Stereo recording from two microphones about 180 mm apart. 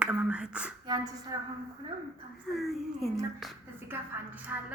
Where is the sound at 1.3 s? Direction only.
25° right (ahead or behind).